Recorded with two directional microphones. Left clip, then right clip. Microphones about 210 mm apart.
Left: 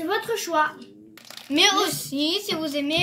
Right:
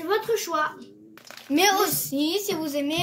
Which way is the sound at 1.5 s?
35° right (ahead or behind).